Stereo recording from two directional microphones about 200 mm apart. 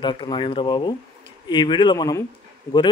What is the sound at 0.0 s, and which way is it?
Speech, 25° left (ahead or behind).